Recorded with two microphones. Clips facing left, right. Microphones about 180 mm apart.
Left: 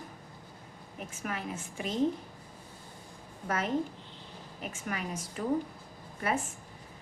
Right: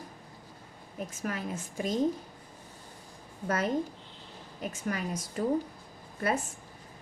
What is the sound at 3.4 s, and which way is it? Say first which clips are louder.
Speech: right 3 dB; 40° right (ahead or behind).